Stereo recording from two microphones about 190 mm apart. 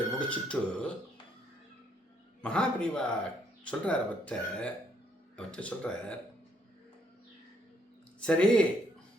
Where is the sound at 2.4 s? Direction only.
5° left (ahead or behind).